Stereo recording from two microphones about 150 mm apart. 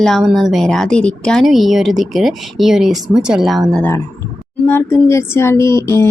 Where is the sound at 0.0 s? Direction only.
Centre (ahead or behind).